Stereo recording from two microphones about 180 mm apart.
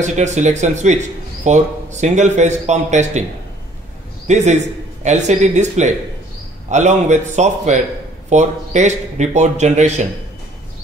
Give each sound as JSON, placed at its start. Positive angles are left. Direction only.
{"t": 0.0, "sound": "a man's voice", "side_deg": -40}
{"t": 4.3, "sound": "a man's voice", "side_deg": -40}